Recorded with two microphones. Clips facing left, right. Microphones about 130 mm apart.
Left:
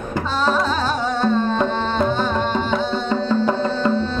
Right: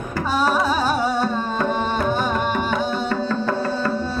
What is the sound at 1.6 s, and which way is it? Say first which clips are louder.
Music: left 1 dB; 10° right (ahead or behind).